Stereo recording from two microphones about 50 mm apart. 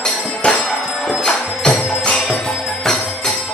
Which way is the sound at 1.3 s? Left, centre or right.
Centre.